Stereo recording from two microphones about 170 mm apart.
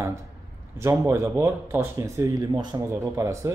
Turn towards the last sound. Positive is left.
turn(degrees=-15)  # may be behind; listen again after turning